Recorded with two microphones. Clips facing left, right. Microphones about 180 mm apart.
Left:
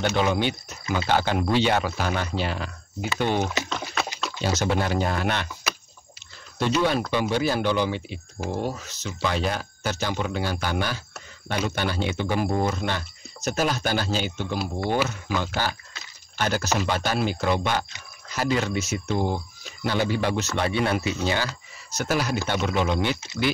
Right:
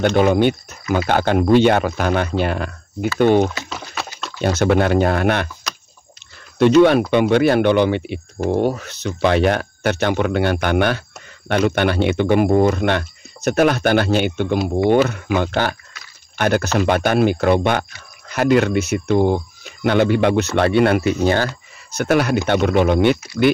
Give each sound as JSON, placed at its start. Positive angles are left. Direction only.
{"t": 0.1, "sound": "speech", "side_deg": -55}
{"t": 3.6, "sound": "a sound", "side_deg": -5}
{"t": 4.4, "sound": "speech", "side_deg": -55}
{"t": 6.6, "sound": "speech", "side_deg": -65}